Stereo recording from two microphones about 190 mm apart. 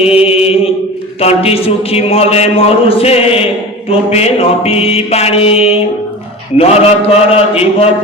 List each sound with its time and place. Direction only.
0.0 s a man's voice: 30° left (ahead or behind)